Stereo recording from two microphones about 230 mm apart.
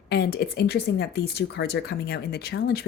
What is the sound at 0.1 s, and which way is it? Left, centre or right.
Speech, left.